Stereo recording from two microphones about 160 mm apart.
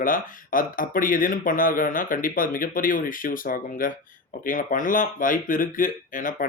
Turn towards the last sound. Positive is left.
turn(degrees=55)  # may be behind; listen again after turning